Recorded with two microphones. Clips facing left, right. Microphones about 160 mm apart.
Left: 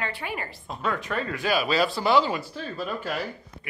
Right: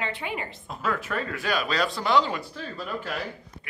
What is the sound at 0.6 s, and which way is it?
Speech, centre (ahead or behind).